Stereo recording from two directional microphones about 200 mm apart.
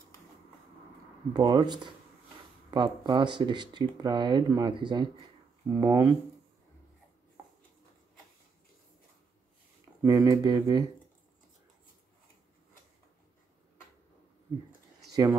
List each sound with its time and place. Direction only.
1.3 s speech: 20° right (ahead or behind)
7.4 s a sound: 15° right (ahead or behind)
10.0 s speech: 15° right (ahead or behind)